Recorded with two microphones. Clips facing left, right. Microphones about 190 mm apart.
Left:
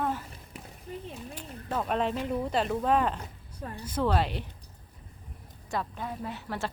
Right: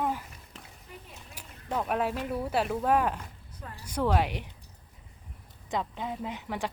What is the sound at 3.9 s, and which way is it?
Speech, 10° right (ahead or behind).